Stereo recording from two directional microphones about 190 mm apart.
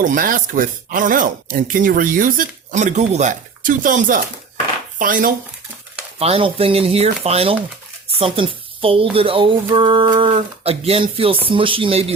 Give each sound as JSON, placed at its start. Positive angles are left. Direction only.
{"t": 0.0, "sound": "speech", "side_deg": -45}
{"t": 6.1, "sound": "speech", "side_deg": -30}